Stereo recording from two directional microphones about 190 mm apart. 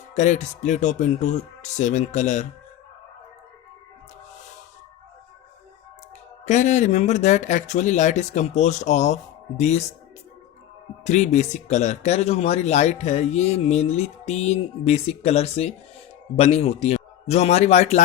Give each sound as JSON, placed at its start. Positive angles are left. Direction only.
{"t": 0.1, "sound": "speech", "side_deg": 40}
{"t": 6.5, "sound": "speech", "side_deg": 40}
{"t": 11.0, "sound": "speech", "side_deg": 35}